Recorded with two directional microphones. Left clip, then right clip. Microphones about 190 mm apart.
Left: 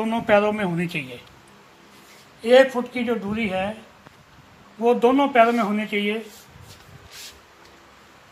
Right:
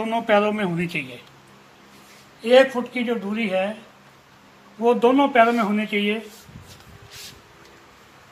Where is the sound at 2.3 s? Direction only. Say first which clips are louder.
Even; 30° left (ahead or behind).